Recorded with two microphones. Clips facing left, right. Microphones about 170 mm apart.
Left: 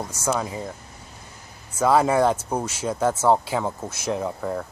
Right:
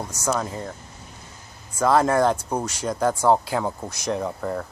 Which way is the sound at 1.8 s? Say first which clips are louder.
Even; 5° left (ahead or behind).